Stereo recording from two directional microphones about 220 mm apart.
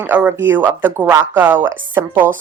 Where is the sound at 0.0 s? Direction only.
5° right (ahead or behind).